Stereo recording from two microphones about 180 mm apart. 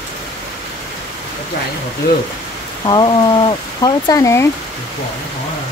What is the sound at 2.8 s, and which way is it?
Speech, 25° left (ahead or behind).